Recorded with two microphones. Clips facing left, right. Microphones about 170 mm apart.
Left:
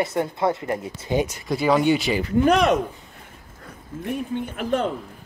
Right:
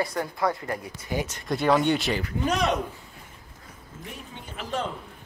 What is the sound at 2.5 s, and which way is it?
Speech, 60° left (ahead or behind).